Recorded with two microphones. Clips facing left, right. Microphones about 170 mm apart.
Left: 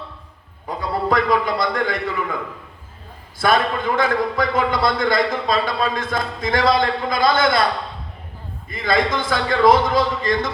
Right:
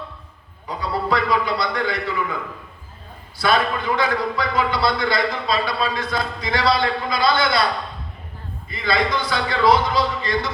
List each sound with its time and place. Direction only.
0.8 s a sound: 50° left (ahead or behind)
3.3 s a man's voice: 50° left (ahead or behind)
8.7 s a man's voice: 45° left (ahead or behind)